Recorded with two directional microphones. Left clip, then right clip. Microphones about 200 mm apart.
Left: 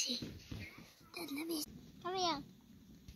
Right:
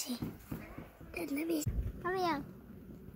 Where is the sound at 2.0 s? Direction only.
15° right (ahead or behind).